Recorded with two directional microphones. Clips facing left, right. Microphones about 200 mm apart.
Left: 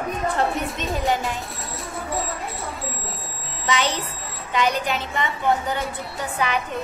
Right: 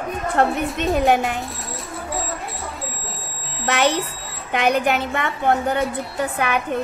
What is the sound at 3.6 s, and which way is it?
A woman's voice, 60° right (ahead or behind).